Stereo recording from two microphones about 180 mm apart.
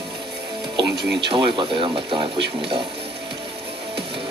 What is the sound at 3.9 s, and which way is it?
Music, 30° right (ahead or behind).